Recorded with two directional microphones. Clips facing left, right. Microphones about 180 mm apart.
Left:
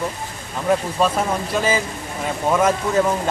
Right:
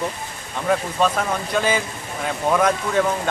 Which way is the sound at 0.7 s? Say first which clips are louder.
Left 1 dB; 10° left (ahead or behind).